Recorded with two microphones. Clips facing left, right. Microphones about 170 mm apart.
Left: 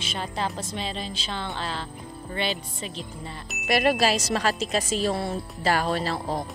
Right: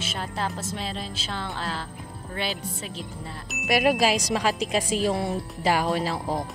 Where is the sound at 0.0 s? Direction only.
5° right (ahead or behind).